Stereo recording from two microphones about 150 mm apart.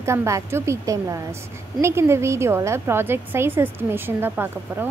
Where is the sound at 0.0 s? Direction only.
20° right (ahead or behind).